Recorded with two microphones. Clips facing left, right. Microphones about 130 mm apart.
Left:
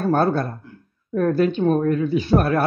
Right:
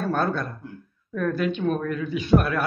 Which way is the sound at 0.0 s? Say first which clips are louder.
Left 6 dB; 30° left (ahead or behind).